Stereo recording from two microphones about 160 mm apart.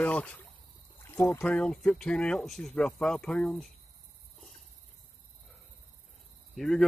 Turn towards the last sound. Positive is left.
turn(degrees=0)  # may be behind; listen again after turning